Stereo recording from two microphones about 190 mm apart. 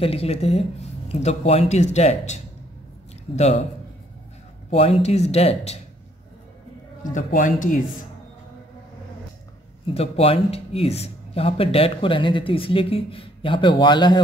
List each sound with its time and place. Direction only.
0.0 s speech: 30° left (ahead or behind)
4.6 s speech: 30° left (ahead or behind)
7.0 s a man's voice: 45° left (ahead or behind)
9.8 s speech: 30° left (ahead or behind)